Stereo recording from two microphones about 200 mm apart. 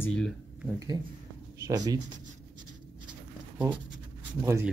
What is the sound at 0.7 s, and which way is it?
Speech, 20° right (ahead or behind).